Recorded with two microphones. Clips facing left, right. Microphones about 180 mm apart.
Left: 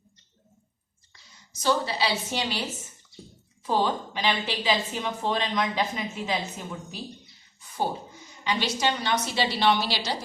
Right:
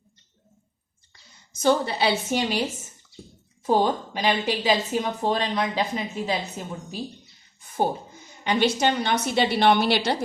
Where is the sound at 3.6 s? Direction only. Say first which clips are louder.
Right 4 dB; 45° right (ahead or behind).